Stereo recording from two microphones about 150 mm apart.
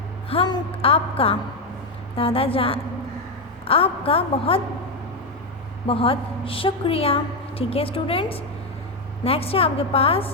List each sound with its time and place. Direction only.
0.4 s a woman's voice: 35° left (ahead or behind)
5.9 s a woman's voice: 40° left (ahead or behind)